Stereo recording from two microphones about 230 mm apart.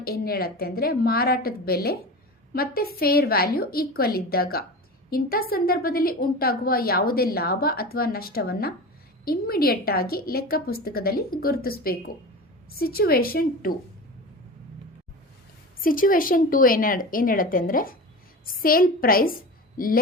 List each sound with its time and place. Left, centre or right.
0.0 s a woman's voice: left
15.8 s a woman's voice: left